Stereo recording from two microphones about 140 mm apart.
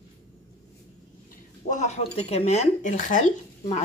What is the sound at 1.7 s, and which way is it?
Speech, 55° left (ahead or behind).